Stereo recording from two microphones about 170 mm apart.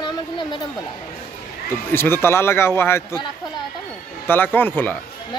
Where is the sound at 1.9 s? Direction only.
15° left (ahead or behind).